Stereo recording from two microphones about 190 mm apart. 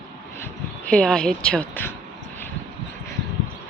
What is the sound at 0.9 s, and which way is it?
Speech, 5° left (ahead or behind).